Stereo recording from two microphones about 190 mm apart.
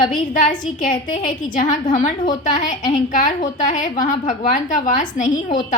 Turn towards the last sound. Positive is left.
turn(degrees=40)  # may be behind; listen again after turning